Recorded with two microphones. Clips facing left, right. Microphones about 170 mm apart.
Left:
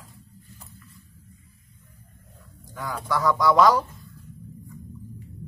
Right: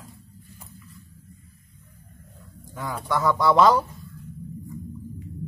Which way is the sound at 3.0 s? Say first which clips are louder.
Even; 25° right (ahead or behind).